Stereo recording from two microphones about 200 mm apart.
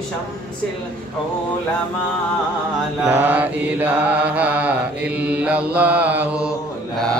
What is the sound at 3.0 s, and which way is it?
Mantra, 10° right (ahead or behind).